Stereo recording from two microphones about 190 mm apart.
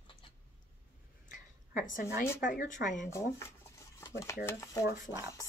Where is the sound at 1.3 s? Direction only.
45° left (ahead or behind).